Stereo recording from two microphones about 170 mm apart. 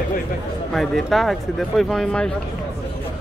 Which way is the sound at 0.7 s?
Centre (ahead or behind).